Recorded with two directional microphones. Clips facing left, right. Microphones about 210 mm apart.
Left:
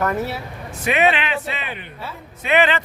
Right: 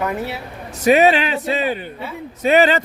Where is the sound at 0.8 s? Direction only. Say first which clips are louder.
Right 6 dB; 40° right (ahead or behind).